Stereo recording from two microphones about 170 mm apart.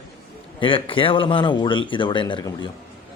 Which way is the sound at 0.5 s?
30° left (ahead or behind).